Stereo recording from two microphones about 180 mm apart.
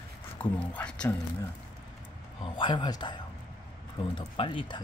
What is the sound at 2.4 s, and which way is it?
Speech, 25° left (ahead or behind).